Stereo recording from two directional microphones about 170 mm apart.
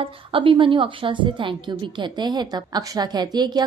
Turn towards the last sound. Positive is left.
turn(degrees=-25)  # may be behind; listen again after turning